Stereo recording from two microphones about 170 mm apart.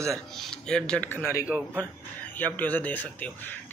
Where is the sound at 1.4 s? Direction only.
10° right (ahead or behind).